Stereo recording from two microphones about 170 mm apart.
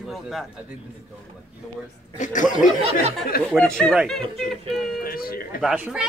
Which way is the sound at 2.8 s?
40° right (ahead or behind).